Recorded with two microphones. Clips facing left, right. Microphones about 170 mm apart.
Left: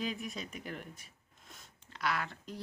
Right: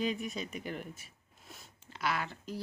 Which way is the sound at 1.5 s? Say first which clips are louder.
Right 3 dB; centre (ahead or behind).